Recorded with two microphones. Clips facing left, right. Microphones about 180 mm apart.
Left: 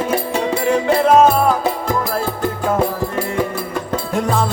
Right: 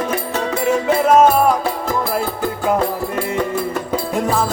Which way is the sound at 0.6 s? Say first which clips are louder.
Even; 5° right (ahead or behind).